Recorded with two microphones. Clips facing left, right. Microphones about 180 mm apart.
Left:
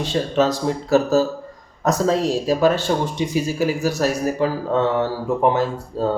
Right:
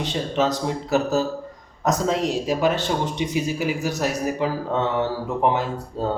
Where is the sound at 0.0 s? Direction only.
20° right (ahead or behind).